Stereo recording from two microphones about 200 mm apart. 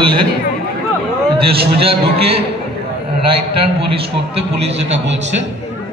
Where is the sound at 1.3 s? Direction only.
30° right (ahead or behind).